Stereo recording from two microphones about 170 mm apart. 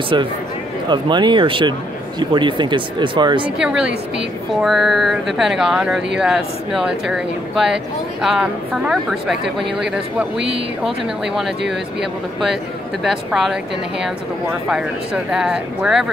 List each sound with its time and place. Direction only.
0.1 s speech: 25° right (ahead or behind)
3.4 s speech: 5° right (ahead or behind)
15.3 s speech: 5° right (ahead or behind)